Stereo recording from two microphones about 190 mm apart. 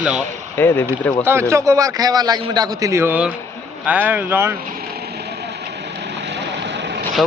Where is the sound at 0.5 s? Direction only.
10° left (ahead or behind).